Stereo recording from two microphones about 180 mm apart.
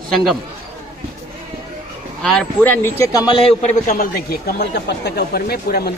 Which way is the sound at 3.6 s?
50° left (ahead or behind).